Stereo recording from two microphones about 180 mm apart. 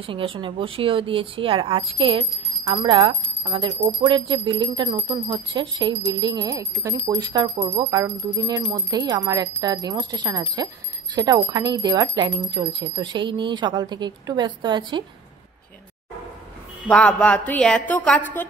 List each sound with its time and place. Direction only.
0.0 s speech: 30° right (ahead or behind)
16.8 s a woman's voice: 5° left (ahead or behind)